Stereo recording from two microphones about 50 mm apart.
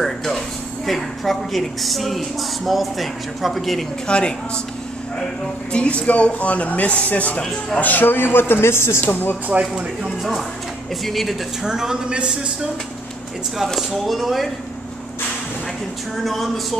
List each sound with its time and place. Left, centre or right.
0.0 s a sound: centre
0.8 s a woman's voice: centre
4.1 s speech: centre
5.7 s a man's voice: left
9.1 s a man's voice: left
9.5 s speech: right
11.1 s a woman's voice: centre
11.6 s speech: centre
13.7 s a woman's voice: centre